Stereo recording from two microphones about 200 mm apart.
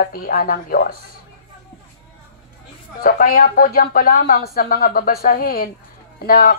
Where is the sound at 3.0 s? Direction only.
45° left (ahead or behind).